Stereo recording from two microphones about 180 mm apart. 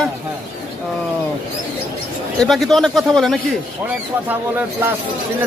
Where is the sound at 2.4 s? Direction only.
Centre (ahead or behind).